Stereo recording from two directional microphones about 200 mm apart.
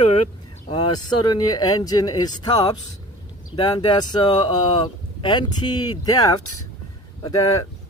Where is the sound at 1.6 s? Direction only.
20° left (ahead or behind).